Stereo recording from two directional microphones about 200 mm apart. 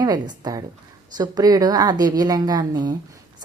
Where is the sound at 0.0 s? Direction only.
20° right (ahead or behind).